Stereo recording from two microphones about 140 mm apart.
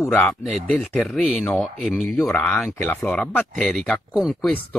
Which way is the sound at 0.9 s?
Centre (ahead or behind).